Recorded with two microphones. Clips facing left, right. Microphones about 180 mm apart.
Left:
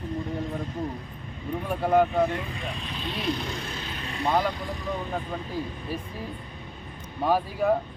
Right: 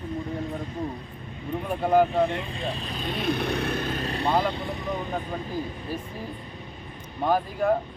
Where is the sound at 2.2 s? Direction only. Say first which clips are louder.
Right 1 dB; 25° right (ahead or behind); by 4.0 s 55° right (ahead or behind).